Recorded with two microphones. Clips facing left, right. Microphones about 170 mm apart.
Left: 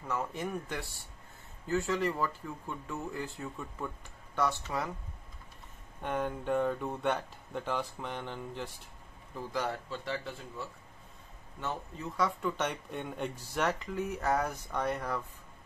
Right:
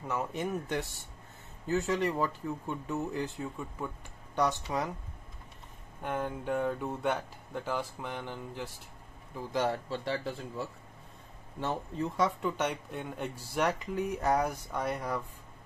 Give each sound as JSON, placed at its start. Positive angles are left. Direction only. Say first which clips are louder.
{"t": 0.0, "sound": "speech", "louder": "right 2 dB", "side_deg": -20}
{"t": 4.7, "sound": "speech", "louder": "right 2 dB", "side_deg": -20}
{"t": 6.0, "sound": "speech", "louder": "left 1 dB", "side_deg": -5}
{"t": 9.5, "sound": "speech", "louder": "right 5 dB", "side_deg": -25}
{"t": 11.6, "sound": "speech", "louder": "right 5 dB", "side_deg": -30}
{"t": 12.4, "sound": "speech", "louder": "right 1 dB", "side_deg": -15}